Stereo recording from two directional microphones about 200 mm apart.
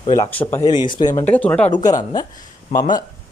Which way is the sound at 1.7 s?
20° left (ahead or behind).